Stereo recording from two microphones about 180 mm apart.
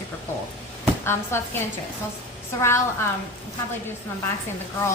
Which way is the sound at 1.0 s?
15° left (ahead or behind).